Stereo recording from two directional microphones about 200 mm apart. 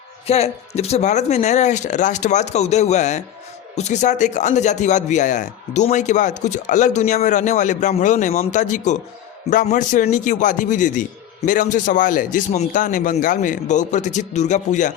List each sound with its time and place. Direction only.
0.3 s a man's voice: 30° left (ahead or behind)